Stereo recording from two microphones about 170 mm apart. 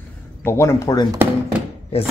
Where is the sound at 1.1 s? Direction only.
10° right (ahead or behind).